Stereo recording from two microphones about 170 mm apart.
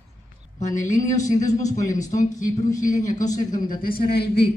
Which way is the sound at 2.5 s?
20° left (ahead or behind).